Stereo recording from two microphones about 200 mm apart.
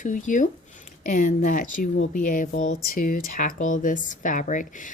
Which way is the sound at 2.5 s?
80° left.